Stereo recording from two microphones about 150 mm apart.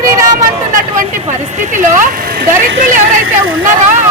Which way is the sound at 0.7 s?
65° right (ahead or behind).